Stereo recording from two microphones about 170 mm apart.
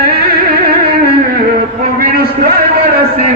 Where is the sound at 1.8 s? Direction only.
60° right (ahead or behind).